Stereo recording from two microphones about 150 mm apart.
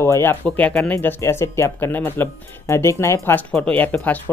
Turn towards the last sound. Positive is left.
turn(degrees=10)  # may be behind; listen again after turning